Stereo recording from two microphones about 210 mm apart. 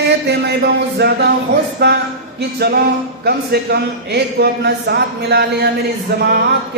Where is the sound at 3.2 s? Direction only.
50° right (ahead or behind).